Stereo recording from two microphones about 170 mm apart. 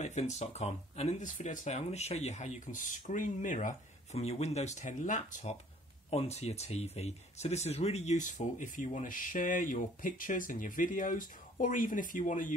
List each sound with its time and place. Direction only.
0.0 s speech: 40° left (ahead or behind)